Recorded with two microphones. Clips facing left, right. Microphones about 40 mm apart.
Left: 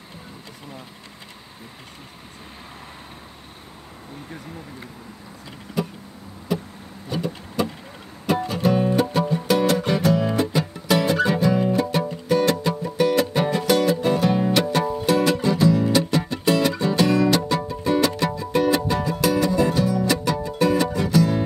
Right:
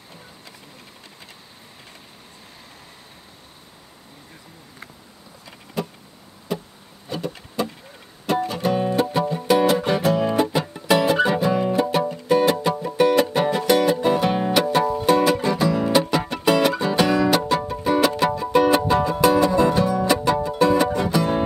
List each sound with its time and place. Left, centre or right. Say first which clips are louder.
8.3 s music: left 1 dB; centre
9.5 s music: right 3 dB; centre
15.7 s music: even; right